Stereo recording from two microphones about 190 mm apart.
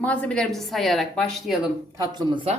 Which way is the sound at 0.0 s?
5° left (ahead or behind).